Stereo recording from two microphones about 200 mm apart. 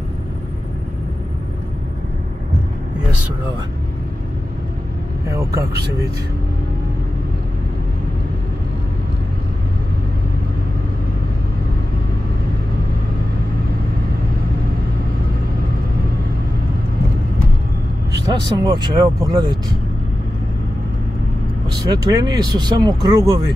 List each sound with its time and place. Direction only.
5.3 s speech: 15° right (ahead or behind)
18.2 s speech: 20° right (ahead or behind)
21.9 s speech: 20° right (ahead or behind)